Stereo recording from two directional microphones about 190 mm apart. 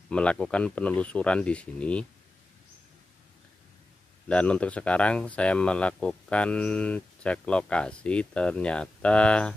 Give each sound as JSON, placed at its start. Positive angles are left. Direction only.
{"t": 0.1, "sound": "speech", "side_deg": 5}
{"t": 4.3, "sound": "speech", "side_deg": 5}